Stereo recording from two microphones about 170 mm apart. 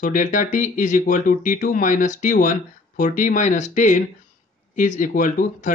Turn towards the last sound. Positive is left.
turn(degrees=50)  # may be behind; listen again after turning